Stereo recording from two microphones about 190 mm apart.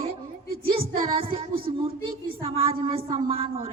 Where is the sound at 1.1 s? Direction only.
30° right (ahead or behind).